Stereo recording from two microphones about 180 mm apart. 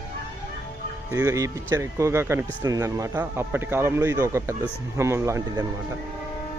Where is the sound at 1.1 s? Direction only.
15° right (ahead or behind).